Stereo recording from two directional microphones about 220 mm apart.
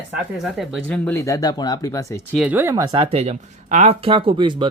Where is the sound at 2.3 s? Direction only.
10° right (ahead or behind).